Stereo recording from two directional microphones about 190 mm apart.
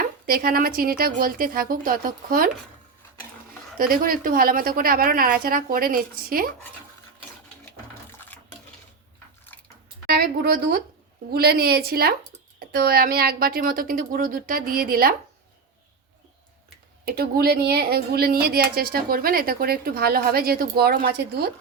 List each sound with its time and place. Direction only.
0.3 s a woman's voice: 50° right (ahead or behind)
3.8 s a woman's voice: 50° right (ahead or behind)
8.3 s a sound: 10° left (ahead or behind)
10.2 s a woman's voice: 55° right (ahead or behind)
17.1 s a woman's voice: 55° right (ahead or behind)